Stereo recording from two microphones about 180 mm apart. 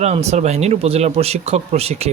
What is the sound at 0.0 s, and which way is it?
Speech, 35° right (ahead or behind).